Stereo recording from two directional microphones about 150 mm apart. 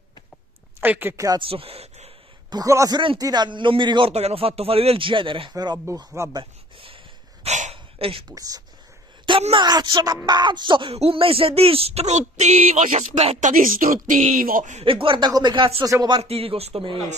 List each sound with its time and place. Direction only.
0.7 s speech: 15° right (ahead or behind)
1.4 s speech: 40° right (ahead or behind)
2.5 s a woman's voice: 20° right (ahead or behind)
4.1 s speech: 45° right (ahead or behind); by 6.4 s 20° right (ahead or behind)
7.4 s hiccup: 55° right (ahead or behind)
7.7 s a sound: 40° right (ahead or behind)
8.3 s a woman's voice: 25° right (ahead or behind); by 14.9 s 55° right (ahead or behind)
14.9 s a woman's voice: 35° right (ahead or behind)
16.2 s speech: 40° right (ahead or behind)